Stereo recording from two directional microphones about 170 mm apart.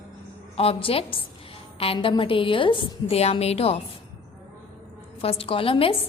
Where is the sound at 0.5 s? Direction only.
35° left (ahead or behind).